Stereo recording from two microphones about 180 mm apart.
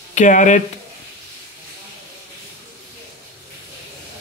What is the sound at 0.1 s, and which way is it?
Speech, 45° left (ahead or behind).